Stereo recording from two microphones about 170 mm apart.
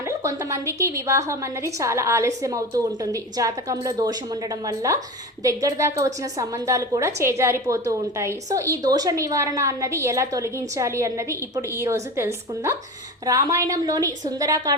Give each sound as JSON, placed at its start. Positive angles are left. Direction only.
{"t": 0.2, "sound": "a woman's voice", "side_deg": -15}